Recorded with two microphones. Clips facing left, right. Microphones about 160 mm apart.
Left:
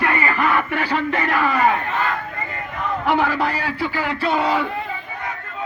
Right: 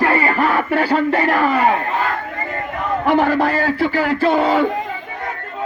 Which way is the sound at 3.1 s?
45° right (ahead or behind).